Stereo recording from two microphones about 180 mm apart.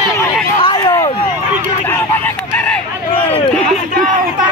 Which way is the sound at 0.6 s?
25° left (ahead or behind).